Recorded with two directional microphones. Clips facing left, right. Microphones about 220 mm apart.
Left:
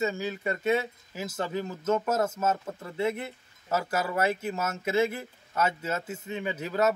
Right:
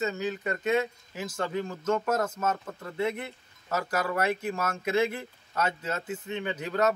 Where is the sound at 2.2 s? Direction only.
5° left (ahead or behind).